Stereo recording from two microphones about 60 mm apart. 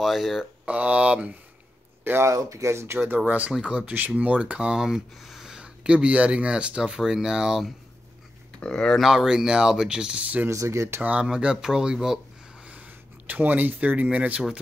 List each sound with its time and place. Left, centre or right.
0.0 s speech: centre
0.7 s speech: right
2.3 s speech: right
3.3 s speech: right; by 7.7 s centre
8.5 s speech: centre
9.0 s speech: centre; by 10.4 s right
10.5 s speech: right
11.0 s speech: right
11.2 s speech: centre
12.6 s a sound: right
14.1 s speech: right